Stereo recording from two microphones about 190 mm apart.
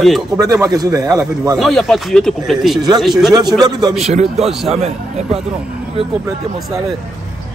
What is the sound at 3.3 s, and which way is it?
Speech, 20° right (ahead or behind).